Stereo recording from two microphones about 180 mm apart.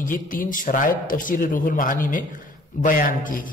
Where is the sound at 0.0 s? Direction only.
50° left (ahead or behind).